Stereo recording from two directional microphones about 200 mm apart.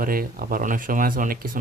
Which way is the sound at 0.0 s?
45° right (ahead or behind).